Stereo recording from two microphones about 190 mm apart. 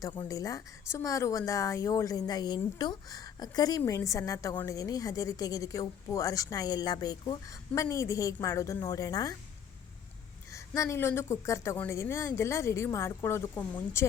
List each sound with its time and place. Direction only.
0.0 s speech: 20° left (ahead or behind)
10.5 s speech: 15° left (ahead or behind)